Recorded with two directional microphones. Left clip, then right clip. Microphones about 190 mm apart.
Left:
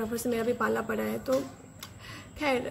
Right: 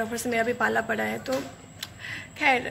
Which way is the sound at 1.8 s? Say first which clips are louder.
Right 10 dB; 10° left (ahead or behind).